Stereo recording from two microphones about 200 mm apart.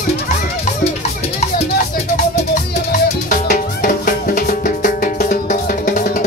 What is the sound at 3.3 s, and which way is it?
Music, 45° left (ahead or behind).